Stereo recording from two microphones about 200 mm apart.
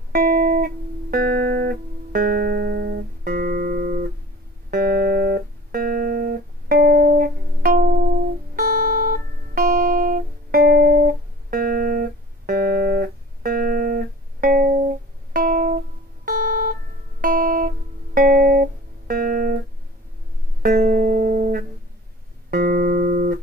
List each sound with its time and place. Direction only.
0.1 s music: 45° right (ahead or behind)
16.3 s guitar: 40° right (ahead or behind)
20.6 s music: 45° right (ahead or behind)